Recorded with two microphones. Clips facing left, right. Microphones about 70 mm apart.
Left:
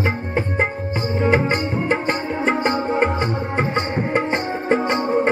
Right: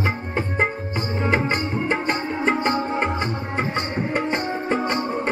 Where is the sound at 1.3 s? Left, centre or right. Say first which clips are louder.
Left 3 dB; left.